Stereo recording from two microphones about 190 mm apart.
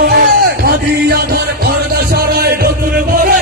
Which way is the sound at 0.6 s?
55° right (ahead or behind).